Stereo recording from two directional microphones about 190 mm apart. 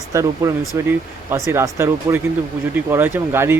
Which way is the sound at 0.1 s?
15° right (ahead or behind).